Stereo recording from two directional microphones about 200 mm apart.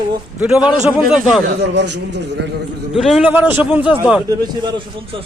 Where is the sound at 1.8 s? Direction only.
60° right (ahead or behind).